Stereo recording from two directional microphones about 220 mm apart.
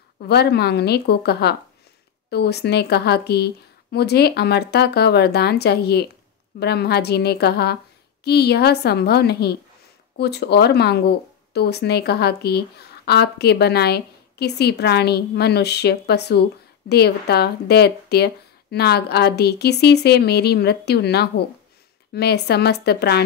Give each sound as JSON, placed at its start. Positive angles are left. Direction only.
{"t": 0.3, "sound": "speech", "side_deg": 45}